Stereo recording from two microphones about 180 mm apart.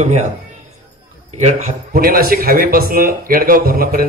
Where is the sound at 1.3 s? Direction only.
40° right (ahead or behind).